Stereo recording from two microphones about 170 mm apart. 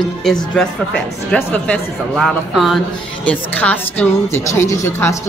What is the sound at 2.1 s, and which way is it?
A woman's voice, centre (ahead or behind).